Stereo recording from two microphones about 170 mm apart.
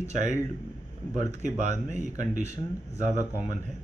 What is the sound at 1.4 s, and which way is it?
Speech, 45° right (ahead or behind).